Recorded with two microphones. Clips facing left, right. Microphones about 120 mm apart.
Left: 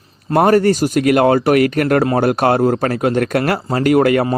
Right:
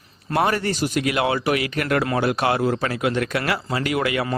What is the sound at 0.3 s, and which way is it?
Speech, 45° left (ahead or behind).